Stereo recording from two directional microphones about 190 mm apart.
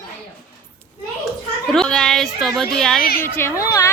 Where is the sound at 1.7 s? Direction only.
Centre (ahead or behind).